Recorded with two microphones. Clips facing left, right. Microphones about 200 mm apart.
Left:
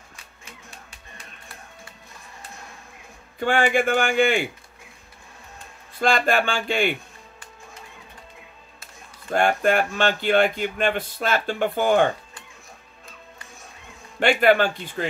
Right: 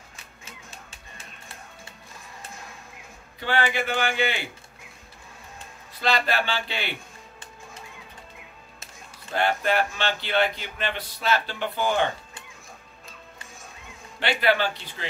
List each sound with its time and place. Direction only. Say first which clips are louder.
3.3 s speech: left 5 dB; 50° left (ahead or behind)
5.9 s speech: left 4 dB; 50° left (ahead or behind)
9.3 s speech: left 4 dB; 50° left (ahead or behind)
14.2 s speech: left 6 dB; 50° left (ahead or behind)